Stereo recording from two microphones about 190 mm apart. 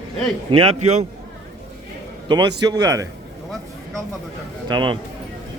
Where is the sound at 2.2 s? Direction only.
25° right (ahead or behind).